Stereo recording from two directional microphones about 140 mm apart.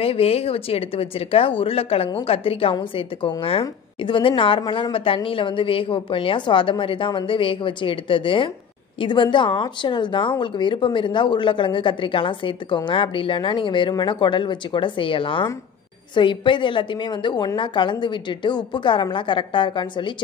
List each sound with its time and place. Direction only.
0.0 s speech: 45° left (ahead or behind)